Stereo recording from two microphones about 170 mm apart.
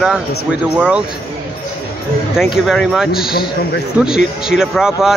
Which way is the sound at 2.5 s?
Centre (ahead or behind).